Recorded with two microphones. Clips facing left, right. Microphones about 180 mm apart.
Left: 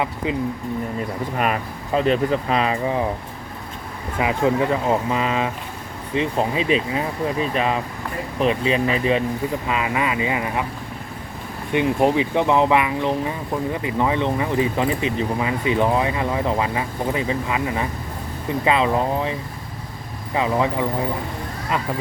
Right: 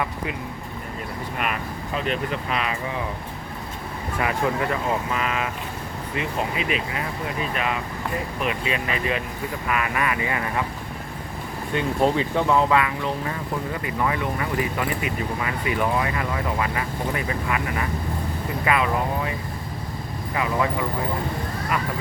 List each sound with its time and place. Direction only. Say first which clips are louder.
2.0 s speech: left 7 dB; 35° left (ahead or behind)
4.2 s speech: left 5 dB; 20° left (ahead or behind)
11.7 s speech: left 4 dB; 15° left (ahead or behind)
20.3 s speech: left 4 dB; 25° left (ahead or behind)